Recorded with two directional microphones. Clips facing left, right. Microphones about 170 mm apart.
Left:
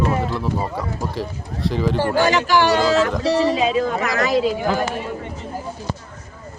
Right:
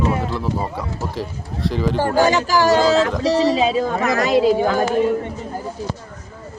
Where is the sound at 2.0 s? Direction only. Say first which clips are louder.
Right 3 dB; 40° right (ahead or behind).